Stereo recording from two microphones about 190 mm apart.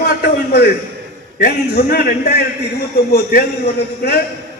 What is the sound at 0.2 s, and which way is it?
A man's voice, 55° left (ahead or behind).